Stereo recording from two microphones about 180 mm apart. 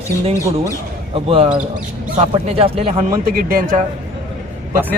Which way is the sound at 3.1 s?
50° right (ahead or behind).